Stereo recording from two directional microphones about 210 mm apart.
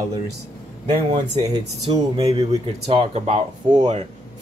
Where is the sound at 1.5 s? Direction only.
20° right (ahead or behind).